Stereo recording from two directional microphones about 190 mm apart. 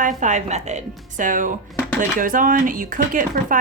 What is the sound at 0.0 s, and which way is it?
A woman's voice, 40° right (ahead or behind).